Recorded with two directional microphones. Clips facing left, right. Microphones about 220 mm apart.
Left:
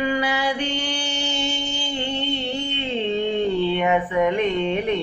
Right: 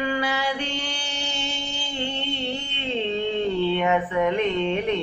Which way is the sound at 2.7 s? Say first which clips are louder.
Left 2 dB; 15° left (ahead or behind).